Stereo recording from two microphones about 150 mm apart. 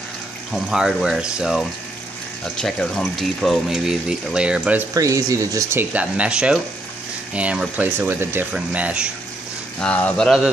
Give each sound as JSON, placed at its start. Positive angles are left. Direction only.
{"t": 0.5, "sound": "speech", "side_deg": 0}
{"t": 4.9, "sound": "speech", "side_deg": -20}
{"t": 9.8, "sound": "speech", "side_deg": 10}